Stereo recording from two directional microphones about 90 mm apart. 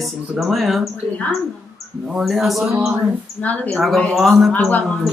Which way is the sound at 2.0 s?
5° right (ahead or behind).